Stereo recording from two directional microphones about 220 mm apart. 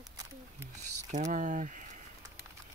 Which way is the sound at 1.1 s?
35° right (ahead or behind).